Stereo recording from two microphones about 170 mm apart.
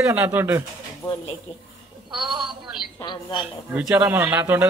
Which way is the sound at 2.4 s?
5° right (ahead or behind).